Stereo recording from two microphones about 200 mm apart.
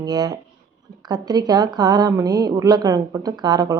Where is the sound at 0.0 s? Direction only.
20° right (ahead or behind).